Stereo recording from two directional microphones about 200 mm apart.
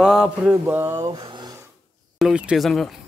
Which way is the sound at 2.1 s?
5° right (ahead or behind).